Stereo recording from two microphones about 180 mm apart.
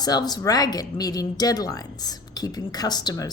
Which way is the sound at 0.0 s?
20° left (ahead or behind).